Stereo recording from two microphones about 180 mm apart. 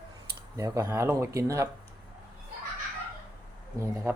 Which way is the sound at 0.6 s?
15° right (ahead or behind).